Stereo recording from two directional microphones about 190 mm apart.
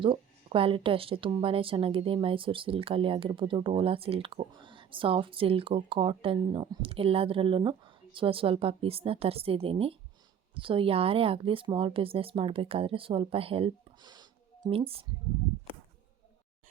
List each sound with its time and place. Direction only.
0.0 s a woman's voice: 25° right (ahead or behind)